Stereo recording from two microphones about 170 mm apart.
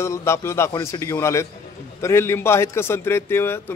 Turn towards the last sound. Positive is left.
turn(degrees=15)  # may be behind; listen again after turning